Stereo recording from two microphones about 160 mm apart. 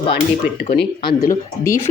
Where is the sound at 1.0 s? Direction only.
20° left (ahead or behind).